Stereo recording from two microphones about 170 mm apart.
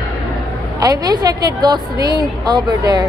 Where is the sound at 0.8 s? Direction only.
20° right (ahead or behind).